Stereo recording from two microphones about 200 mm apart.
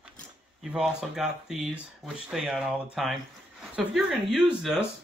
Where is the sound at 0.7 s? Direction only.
5° right (ahead or behind).